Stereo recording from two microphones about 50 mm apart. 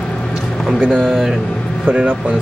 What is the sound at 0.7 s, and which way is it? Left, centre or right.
Speech, centre.